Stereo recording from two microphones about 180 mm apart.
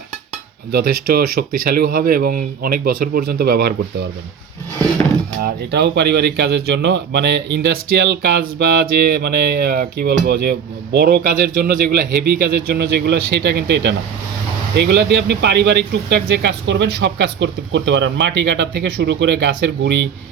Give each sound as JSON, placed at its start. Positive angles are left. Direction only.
{"t": 0.7, "sound": "speech", "side_deg": -60}
{"t": 5.4, "sound": "speech", "side_deg": -70}